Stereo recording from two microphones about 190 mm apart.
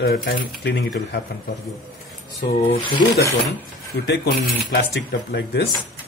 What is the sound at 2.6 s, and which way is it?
Speech, 30° left (ahead or behind).